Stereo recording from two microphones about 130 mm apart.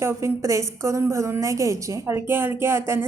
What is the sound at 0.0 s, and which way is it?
A woman's voice, 20° right (ahead or behind).